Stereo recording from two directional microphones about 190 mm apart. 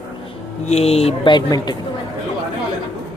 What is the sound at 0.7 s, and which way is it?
Speech, 35° left (ahead or behind).